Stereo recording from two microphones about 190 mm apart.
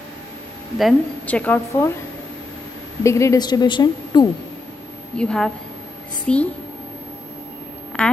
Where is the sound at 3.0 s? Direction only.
15° left (ahead or behind).